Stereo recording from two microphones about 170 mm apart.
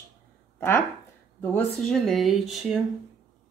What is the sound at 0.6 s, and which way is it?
Speech, 15° left (ahead or behind).